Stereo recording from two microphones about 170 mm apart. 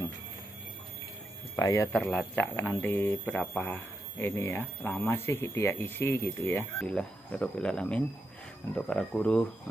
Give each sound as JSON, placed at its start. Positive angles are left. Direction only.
{"t": 1.6, "sound": "speech", "side_deg": 20}
{"t": 1.9, "sound": "speech", "side_deg": 5}